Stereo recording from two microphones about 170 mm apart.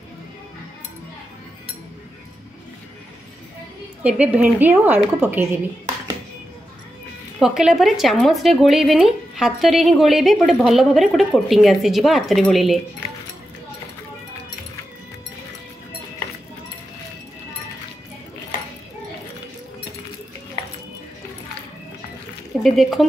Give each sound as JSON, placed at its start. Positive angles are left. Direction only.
{"t": 4.0, "sound": "a woman's voice", "side_deg": -10}
{"t": 7.3, "sound": "speech", "side_deg": -5}
{"t": 22.6, "sound": "speech", "side_deg": 0}